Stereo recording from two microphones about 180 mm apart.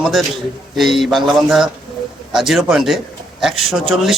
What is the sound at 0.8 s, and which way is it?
A man's voice, centre (ahead or behind).